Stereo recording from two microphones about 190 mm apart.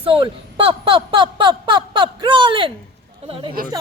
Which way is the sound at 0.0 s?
30° right (ahead or behind).